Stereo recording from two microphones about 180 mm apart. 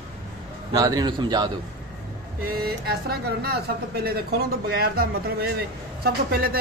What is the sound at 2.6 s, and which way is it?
Speech, 60° right (ahead or behind).